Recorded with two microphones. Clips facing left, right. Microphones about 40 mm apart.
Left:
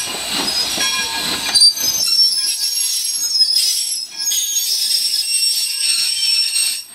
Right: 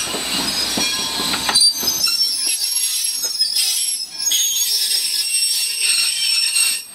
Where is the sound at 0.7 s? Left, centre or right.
Left.